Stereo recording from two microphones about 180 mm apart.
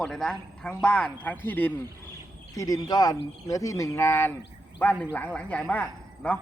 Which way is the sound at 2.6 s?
20° left (ahead or behind).